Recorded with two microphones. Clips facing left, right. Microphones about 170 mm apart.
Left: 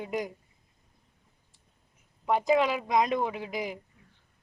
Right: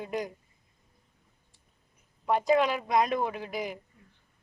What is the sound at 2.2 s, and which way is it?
Speech, centre (ahead or behind).